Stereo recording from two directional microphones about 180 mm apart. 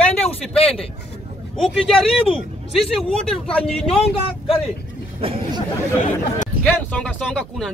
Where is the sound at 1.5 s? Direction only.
5° left (ahead or behind).